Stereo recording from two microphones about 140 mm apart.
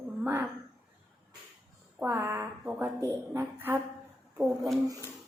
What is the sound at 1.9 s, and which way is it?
A woman's voice, 15° right (ahead or behind).